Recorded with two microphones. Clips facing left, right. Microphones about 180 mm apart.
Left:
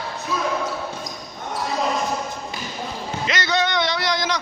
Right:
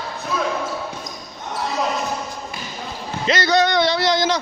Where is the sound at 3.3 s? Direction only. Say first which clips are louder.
Right 6 dB; 35° right (ahead or behind).